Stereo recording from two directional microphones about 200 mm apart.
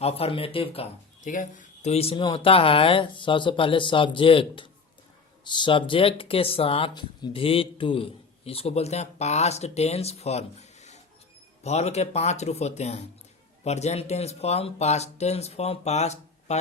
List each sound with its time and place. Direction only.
0.0 s speech: 30° left (ahead or behind)